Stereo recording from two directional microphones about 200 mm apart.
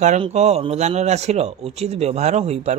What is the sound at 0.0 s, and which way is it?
Speech, 35° right (ahead or behind).